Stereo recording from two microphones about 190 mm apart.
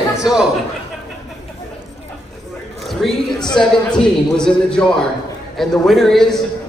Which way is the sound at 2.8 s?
Centre (ahead or behind).